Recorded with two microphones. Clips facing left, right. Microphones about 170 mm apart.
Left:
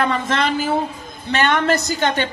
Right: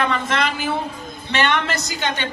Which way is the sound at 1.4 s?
45° left (ahead or behind).